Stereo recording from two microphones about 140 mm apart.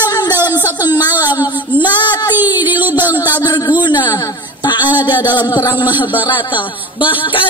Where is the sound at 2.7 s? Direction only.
15° right (ahead or behind).